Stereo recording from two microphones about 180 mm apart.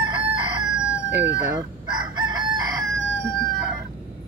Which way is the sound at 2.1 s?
25° right (ahead or behind).